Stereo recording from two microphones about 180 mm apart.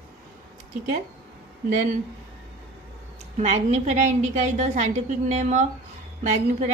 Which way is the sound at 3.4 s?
40° right (ahead or behind).